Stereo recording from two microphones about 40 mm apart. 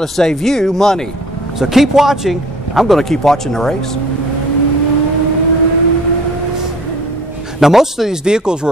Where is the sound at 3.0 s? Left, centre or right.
Centre.